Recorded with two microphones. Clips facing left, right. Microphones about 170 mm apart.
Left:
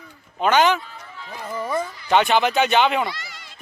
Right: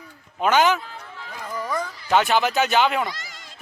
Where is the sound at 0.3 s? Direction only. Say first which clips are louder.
Left 1 dB; 5° right (ahead or behind).